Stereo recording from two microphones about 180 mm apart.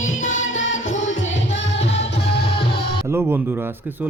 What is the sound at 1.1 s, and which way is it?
Music, 90° left.